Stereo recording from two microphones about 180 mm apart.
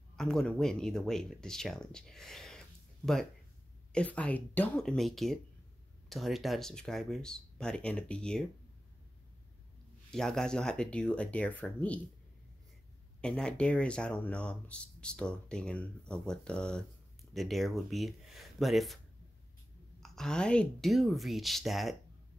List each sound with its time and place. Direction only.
0.1 s speech: 5° left (ahead or behind)
3.9 s speech: 5° left (ahead or behind)
10.1 s speech: 5° left (ahead or behind)
13.2 s speech: 5° left (ahead or behind)
20.0 s speech: 5° left (ahead or behind)